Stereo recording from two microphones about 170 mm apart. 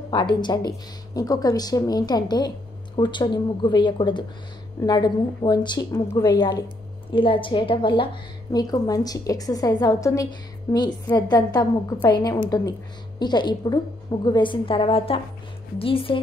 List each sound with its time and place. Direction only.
0.1 s a woman's voice: 25° left (ahead or behind)